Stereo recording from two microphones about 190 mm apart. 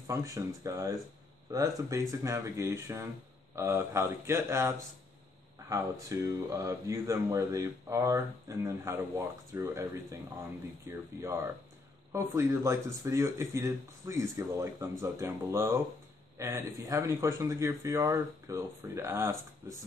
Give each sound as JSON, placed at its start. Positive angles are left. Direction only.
{"t": 0.0, "sound": "speech", "side_deg": -15}